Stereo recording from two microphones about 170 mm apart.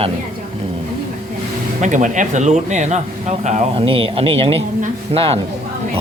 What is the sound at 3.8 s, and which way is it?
Speech, 30° right (ahead or behind).